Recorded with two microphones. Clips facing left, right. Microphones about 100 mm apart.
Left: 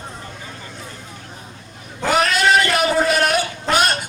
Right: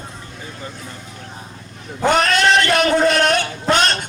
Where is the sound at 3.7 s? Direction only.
5° left (ahead or behind).